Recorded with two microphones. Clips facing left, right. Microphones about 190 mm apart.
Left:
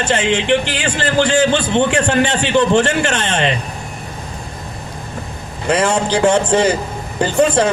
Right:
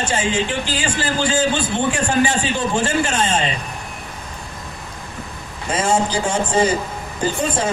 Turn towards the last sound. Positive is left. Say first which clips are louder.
# left 7 dB
turn(degrees=70)  # may be behind; listen again after turning